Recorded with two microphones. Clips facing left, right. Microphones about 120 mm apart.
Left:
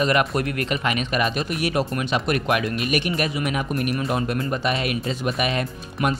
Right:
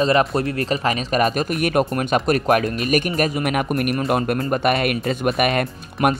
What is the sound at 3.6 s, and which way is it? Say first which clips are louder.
Speech: right 4 dB; 60° right (ahead or behind).